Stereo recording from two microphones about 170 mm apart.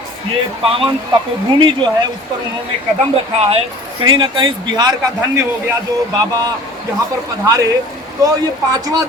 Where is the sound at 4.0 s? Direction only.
25° right (ahead or behind).